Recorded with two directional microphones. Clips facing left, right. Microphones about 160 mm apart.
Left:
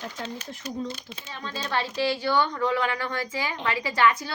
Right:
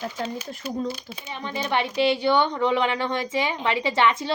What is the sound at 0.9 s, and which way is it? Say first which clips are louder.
Speech: right 5 dB; 10° right (ahead or behind).